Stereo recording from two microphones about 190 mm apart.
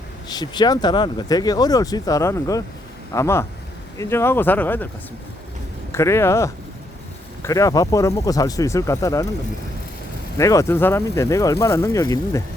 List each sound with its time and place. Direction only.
0.3 s speech: 20° left (ahead or behind)
5.9 s speech: 15° left (ahead or behind)
10.3 s speech: 15° left (ahead or behind)